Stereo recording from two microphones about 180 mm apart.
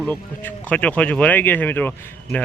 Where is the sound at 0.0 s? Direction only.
10° left (ahead or behind).